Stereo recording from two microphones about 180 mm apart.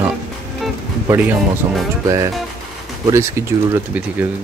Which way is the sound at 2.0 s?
20° right (ahead or behind).